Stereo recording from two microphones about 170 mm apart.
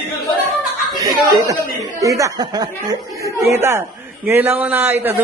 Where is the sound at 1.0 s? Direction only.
20° right (ahead or behind).